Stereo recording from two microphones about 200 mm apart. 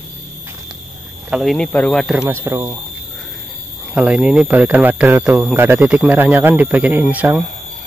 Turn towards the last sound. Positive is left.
turn(degrees=-10)  # may be behind; listen again after turning